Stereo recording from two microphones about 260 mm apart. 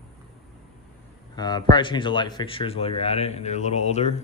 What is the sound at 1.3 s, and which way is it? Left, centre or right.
Speech, centre.